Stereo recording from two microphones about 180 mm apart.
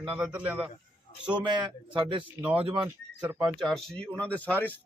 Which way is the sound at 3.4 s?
Centre (ahead or behind).